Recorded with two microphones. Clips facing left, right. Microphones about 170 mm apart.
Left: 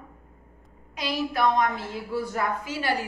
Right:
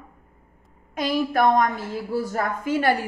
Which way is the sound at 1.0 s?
50° right (ahead or behind).